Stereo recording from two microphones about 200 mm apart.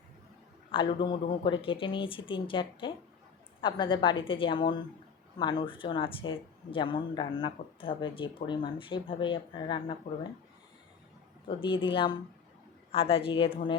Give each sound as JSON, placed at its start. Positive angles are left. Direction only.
{"t": 0.7, "sound": "speech", "side_deg": 25}
{"t": 11.4, "sound": "speech", "side_deg": 25}